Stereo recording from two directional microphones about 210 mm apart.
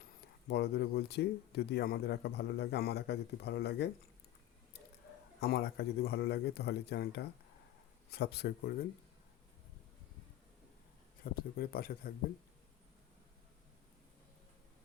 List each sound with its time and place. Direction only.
0.4 s speech: 55° left (ahead or behind)
5.4 s speech: 50° left (ahead or behind)
11.2 s speech: 45° left (ahead or behind)